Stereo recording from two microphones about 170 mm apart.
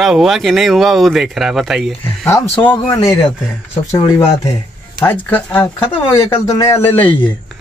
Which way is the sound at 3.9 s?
20° left (ahead or behind).